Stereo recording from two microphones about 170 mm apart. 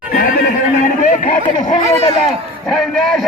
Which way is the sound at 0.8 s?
45° left (ahead or behind).